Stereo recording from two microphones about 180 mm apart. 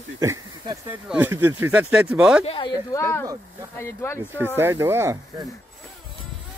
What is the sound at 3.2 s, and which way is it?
Speech, 15° right (ahead or behind).